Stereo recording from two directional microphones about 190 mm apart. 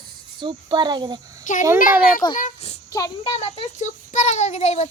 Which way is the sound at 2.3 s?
35° left (ahead or behind).